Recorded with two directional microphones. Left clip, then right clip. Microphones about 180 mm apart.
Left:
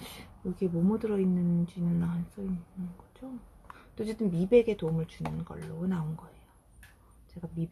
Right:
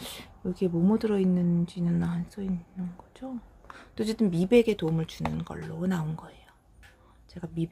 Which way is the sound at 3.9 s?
40° right (ahead or behind).